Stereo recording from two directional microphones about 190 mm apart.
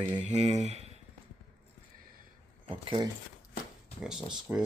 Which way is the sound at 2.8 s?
30° right (ahead or behind).